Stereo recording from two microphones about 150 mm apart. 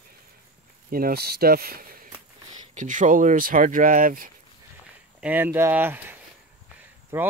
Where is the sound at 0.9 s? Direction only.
85° right.